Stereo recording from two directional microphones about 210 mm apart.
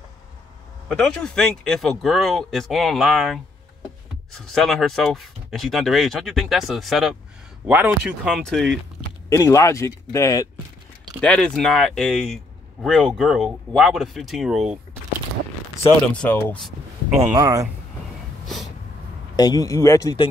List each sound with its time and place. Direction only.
0.9 s speech: 5° left (ahead or behind)
9.3 s speech: 15° left (ahead or behind); by 14.8 s centre (ahead or behind)
15.8 s speech: 5° left (ahead or behind)
17.3 s speech: 15° right (ahead or behind)
19.3 s speech: 20° left (ahead or behind)